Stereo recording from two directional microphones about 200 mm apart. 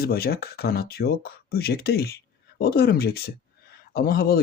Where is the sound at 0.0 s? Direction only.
50° left (ahead or behind).